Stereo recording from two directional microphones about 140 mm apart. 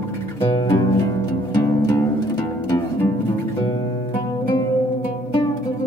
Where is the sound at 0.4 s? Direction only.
30° left (ahead or behind).